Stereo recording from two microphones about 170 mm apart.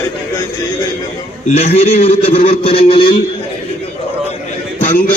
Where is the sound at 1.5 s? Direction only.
35° left (ahead or behind).